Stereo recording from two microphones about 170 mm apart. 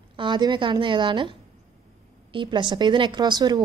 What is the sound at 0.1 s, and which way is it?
A woman's voice, 30° right (ahead or behind).